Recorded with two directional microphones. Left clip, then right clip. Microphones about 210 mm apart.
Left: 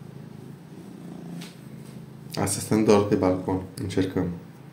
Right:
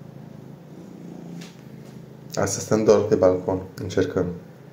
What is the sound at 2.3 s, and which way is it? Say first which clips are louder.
Speech: right 3 dB; 5° left (ahead or behind).